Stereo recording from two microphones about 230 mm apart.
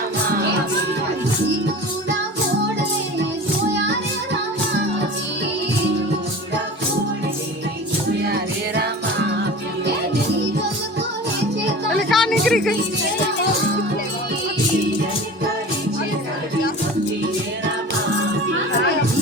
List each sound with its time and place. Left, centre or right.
8.3 s music: right
11.9 s music: centre